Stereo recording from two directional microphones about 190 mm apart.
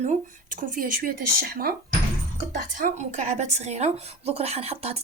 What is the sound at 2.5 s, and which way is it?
A woman's voice, 35° right (ahead or behind).